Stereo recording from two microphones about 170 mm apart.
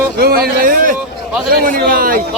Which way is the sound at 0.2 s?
65° right (ahead or behind).